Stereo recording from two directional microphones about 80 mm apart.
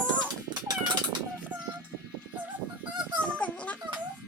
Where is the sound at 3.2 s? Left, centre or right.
Centre.